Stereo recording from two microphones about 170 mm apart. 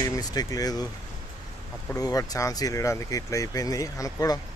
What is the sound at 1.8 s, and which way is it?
A man's voice, 20° left (ahead or behind).